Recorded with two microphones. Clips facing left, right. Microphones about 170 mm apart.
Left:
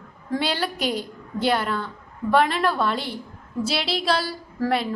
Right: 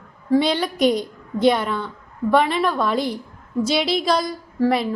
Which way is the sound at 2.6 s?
5° left (ahead or behind).